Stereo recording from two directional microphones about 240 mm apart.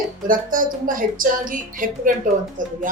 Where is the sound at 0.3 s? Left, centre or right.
Right.